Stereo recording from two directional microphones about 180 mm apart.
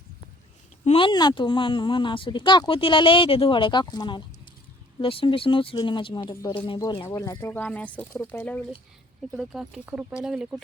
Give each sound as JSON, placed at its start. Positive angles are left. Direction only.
{"t": 0.9, "sound": "speech", "side_deg": 30}
{"t": 9.3, "sound": "speech", "side_deg": 0}